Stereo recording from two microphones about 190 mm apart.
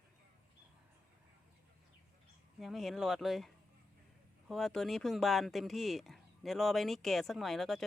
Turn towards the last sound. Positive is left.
turn(degrees=0)  # may be behind; listen again after turning